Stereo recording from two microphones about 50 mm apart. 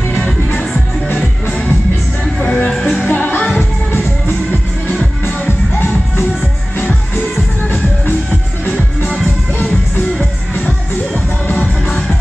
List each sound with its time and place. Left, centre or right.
0.1 s music: left
2.4 s music: left
2.7 s music: centre
3.1 s music: left
3.9 s music: left
8.7 s music: left
11.5 s music: centre